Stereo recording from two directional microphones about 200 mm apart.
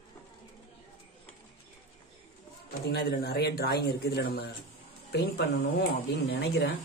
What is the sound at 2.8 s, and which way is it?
A woman's voice, 50° left (ahead or behind).